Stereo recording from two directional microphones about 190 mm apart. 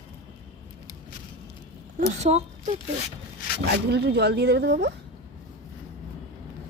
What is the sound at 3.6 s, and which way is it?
Speech, 60° right (ahead or behind).